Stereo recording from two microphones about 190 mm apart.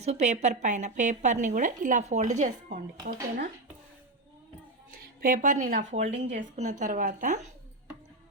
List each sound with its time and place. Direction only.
0.0 s a woman's voice: 35° right (ahead or behind)
5.2 s a woman's voice: 45° right (ahead or behind)